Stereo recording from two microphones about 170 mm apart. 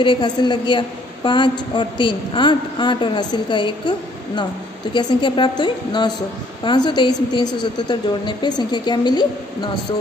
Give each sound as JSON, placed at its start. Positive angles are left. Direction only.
{"t": 0.0, "sound": "a woman's voice", "side_deg": 30}
{"t": 4.9, "sound": "a woman's voice", "side_deg": 25}